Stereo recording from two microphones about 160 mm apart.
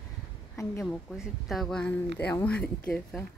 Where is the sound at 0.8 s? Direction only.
Centre (ahead or behind).